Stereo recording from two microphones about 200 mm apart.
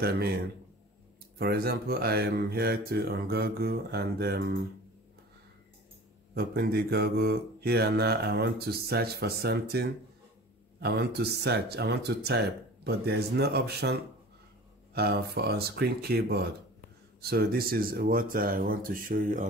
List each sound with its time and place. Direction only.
0.0 s mantra: 50° right (ahead or behind)
1.4 s mantra: 50° right (ahead or behind)
6.3 s mantra: 50° right (ahead or behind)
10.8 s speech: 55° right (ahead or behind)
12.8 s mantra: 55° right (ahead or behind)
15.0 s mantra: 50° right (ahead or behind)